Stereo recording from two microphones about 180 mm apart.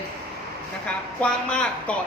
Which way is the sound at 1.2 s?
5° left (ahead or behind).